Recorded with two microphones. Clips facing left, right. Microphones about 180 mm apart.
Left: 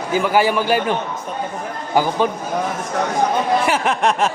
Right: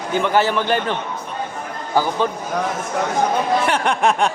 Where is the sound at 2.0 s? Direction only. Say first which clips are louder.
Left 1 dB; 15° left (ahead or behind).